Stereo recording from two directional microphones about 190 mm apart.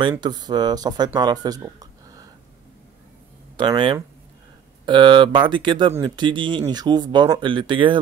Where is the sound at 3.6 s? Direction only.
25° right (ahead or behind).